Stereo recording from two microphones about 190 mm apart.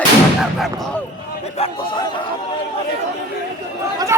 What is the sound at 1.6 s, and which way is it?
Chatter, 20° left (ahead or behind).